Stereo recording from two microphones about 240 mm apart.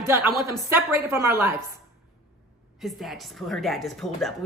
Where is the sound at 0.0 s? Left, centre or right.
Centre.